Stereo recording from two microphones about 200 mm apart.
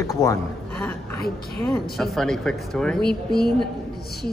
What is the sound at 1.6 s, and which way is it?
Speech, centre (ahead or behind).